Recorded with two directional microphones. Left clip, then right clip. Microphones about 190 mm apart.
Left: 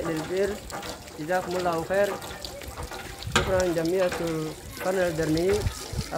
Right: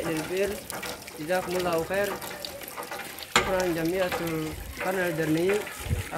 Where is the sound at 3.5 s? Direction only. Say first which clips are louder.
Left 2 dB; 50° left (ahead or behind).